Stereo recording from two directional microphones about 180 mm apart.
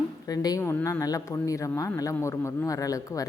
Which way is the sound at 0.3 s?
20° left (ahead or behind).